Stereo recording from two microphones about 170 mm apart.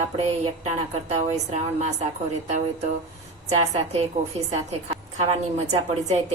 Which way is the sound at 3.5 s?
40° right (ahead or behind).